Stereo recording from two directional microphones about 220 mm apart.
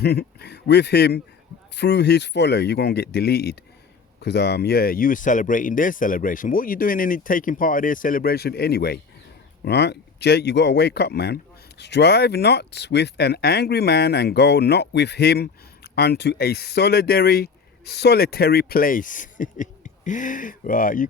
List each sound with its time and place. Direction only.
0.0 s speech: 45° left (ahead or behind)